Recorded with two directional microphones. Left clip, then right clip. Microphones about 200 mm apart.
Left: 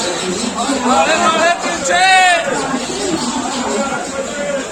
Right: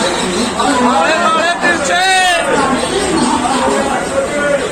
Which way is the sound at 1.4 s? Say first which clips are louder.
Right 2 dB; 35° left (ahead or behind).